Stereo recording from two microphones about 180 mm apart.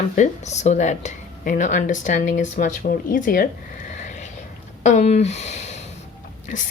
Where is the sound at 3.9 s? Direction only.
40° left (ahead or behind).